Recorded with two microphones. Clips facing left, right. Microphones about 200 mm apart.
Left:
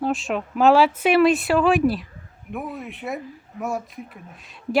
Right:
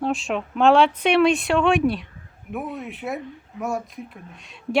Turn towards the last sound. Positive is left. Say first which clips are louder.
# even
turn(degrees=0)  # may be behind; listen again after turning